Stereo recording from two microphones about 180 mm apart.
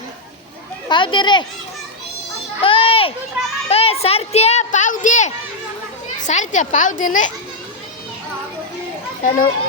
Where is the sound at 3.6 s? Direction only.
35° left (ahead or behind).